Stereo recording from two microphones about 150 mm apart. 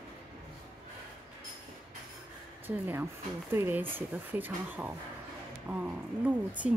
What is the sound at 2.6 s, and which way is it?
A woman's voice, 10° right (ahead or behind).